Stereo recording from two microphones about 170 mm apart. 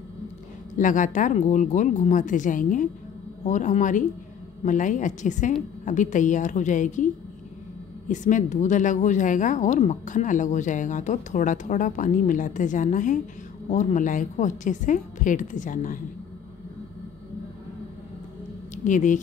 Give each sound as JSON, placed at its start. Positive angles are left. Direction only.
{"t": 0.7, "sound": "speech", "side_deg": 50}
{"t": 8.1, "sound": "speech", "side_deg": 45}
{"t": 18.9, "sound": "speech", "side_deg": 50}